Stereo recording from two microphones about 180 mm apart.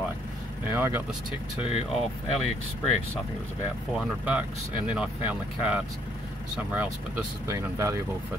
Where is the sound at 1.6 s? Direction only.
35° left (ahead or behind).